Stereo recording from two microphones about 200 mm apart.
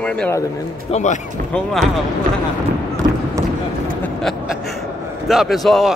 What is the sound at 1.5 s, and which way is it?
Speech, centre (ahead or behind).